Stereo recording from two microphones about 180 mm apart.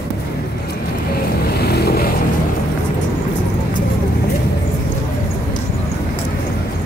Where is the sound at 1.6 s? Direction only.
60° left (ahead or behind).